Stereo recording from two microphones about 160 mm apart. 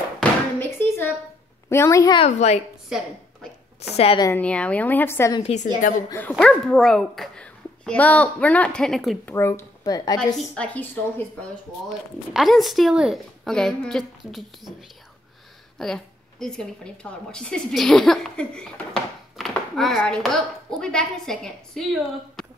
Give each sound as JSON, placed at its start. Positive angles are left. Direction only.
{"t": 0.2, "sound": "a sound", "side_deg": 15}
{"t": 1.7, "sound": "speech", "side_deg": 20}
{"t": 2.1, "sound": "a woman's voice", "side_deg": 45}
{"t": 2.9, "sound": "speech", "side_deg": -5}
{"t": 3.8, "sound": "speech", "side_deg": 40}
{"t": 4.4, "sound": "a woman's voice", "side_deg": 10}
{"t": 5.4, "sound": "a woman's voice", "side_deg": 45}
{"t": 6.3, "sound": "speech", "side_deg": 0}
{"t": 9.2, "sound": "speech", "side_deg": 15}
{"t": 10.1, "sound": "a woman's voice", "side_deg": 5}
{"t": 12.4, "sound": "speech", "side_deg": 0}
{"t": 15.8, "sound": "speech", "side_deg": 5}
{"t": 19.3, "sound": "a sound", "side_deg": 0}
{"t": 20.0, "sound": "speech", "side_deg": 5}